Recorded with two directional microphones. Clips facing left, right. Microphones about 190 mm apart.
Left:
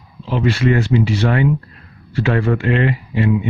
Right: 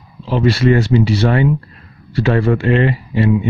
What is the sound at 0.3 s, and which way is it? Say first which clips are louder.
Speech: right 3 dB; 35° right (ahead or behind).